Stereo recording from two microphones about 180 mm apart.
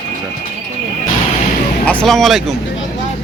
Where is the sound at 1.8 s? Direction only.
5° left (ahead or behind).